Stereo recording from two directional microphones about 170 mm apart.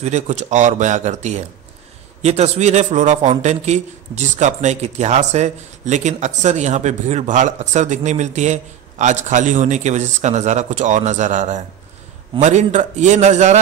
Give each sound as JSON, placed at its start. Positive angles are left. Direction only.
{"t": 0.0, "sound": "a man's voice", "side_deg": -40}